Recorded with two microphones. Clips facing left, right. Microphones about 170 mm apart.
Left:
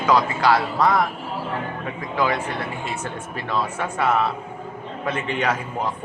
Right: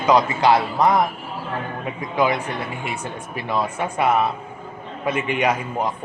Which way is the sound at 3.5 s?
15° right (ahead or behind).